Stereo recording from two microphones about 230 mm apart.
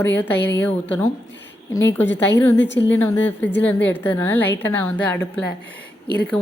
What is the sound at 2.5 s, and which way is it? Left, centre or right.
Speech, left.